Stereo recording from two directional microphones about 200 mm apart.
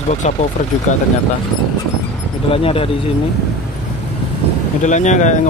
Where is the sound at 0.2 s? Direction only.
35° left (ahead or behind).